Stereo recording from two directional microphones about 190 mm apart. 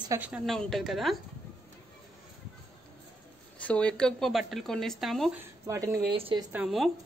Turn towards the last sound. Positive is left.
turn(degrees=0)  # may be behind; listen again after turning